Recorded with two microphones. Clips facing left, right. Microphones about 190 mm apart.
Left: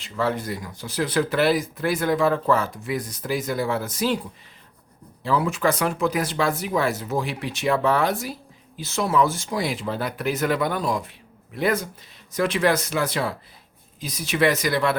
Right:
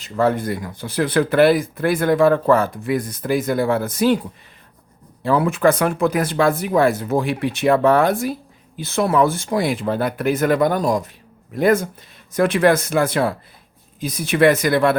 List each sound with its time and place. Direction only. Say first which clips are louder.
0.0 s speech: right 6 dB; 50° right (ahead or behind)
5.2 s speech: right 6 dB; 55° right (ahead or behind)